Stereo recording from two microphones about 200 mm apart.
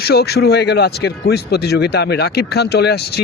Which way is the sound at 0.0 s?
50° left (ahead or behind).